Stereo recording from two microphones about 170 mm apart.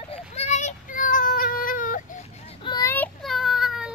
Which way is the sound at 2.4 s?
30° left (ahead or behind).